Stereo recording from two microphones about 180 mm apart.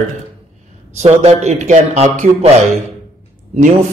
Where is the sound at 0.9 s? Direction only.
35° right (ahead or behind).